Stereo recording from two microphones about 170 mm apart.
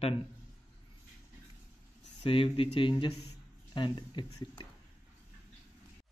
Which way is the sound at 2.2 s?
30° left (ahead or behind).